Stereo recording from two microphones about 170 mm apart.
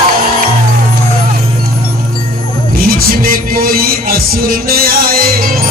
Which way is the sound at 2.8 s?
55° right (ahead or behind).